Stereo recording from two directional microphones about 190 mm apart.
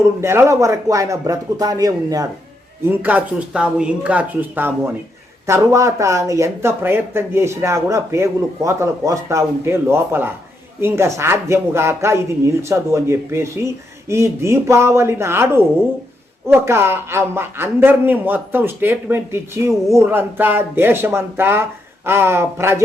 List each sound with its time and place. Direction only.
0.2 s a man's voice: 15° right (ahead or behind)